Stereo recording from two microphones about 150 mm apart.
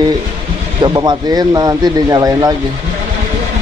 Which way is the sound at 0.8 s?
30° right (ahead or behind).